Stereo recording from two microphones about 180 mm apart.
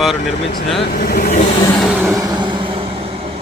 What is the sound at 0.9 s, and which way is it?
Speech, 55° left (ahead or behind).